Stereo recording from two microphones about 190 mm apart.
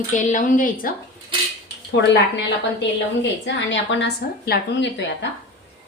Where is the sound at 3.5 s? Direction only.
75° left (ahead or behind).